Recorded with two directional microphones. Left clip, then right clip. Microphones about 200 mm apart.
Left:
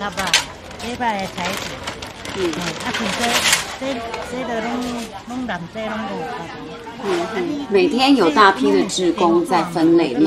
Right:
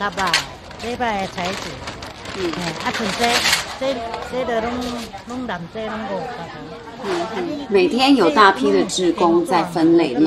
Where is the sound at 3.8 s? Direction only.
45° right (ahead or behind).